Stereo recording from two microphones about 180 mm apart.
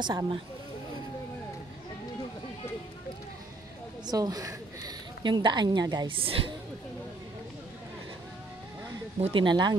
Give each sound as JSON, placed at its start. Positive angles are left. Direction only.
{"t": 0.0, "sound": "speech", "side_deg": -25}
{"t": 4.0, "sound": "a woman's voice", "side_deg": -20}
{"t": 9.2, "sound": "speech", "side_deg": -25}